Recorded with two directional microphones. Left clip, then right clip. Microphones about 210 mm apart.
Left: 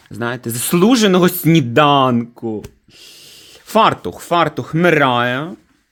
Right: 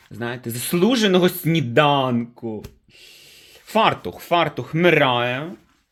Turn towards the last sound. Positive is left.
turn(degrees=40)  # may be behind; listen again after turning